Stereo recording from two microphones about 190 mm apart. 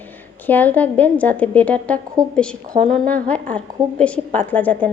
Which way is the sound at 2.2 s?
20° right (ahead or behind).